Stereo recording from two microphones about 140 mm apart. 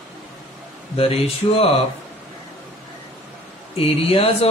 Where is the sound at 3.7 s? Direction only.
45° left (ahead or behind).